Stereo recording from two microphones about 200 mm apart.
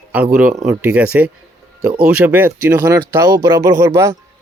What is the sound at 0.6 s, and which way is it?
Speech, 5° right (ahead or behind).